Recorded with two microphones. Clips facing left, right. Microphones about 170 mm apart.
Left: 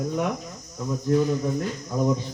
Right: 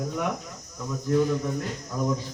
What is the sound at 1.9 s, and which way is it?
Speech, 20° left (ahead or behind).